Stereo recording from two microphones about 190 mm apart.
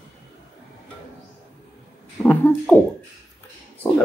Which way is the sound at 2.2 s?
10° left (ahead or behind).